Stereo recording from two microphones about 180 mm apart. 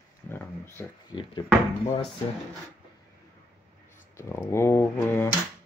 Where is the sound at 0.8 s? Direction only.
10° left (ahead or behind).